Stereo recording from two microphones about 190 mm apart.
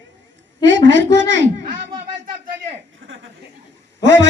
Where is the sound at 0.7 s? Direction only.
70° right (ahead or behind).